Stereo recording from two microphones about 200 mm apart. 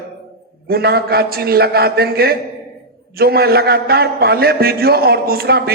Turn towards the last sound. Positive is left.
turn(degrees=-50)  # may be behind; listen again after turning